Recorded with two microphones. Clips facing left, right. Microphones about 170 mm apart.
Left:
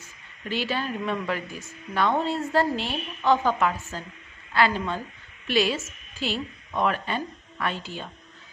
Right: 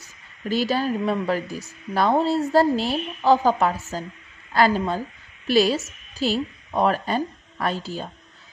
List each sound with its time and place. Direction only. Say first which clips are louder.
0.5 s a woman's voice: right 6 dB; 40° right (ahead or behind)